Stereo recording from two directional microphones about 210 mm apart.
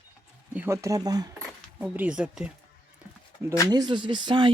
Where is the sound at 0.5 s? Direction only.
10° right (ahead or behind).